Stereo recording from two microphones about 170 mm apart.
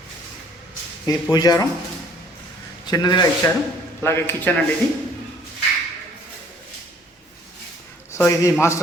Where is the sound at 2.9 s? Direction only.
25° left (ahead or behind).